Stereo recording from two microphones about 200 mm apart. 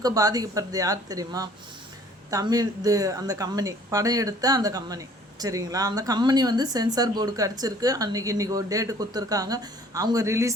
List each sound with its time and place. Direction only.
0.0 s speech: 20° right (ahead or behind)